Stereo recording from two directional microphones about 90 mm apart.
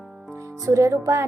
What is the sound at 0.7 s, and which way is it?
Music, 35° right (ahead or behind).